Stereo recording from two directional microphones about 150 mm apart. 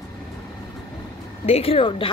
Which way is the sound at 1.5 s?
40° left (ahead or behind).